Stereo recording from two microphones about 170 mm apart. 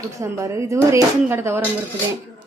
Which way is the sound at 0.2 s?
15° right (ahead or behind).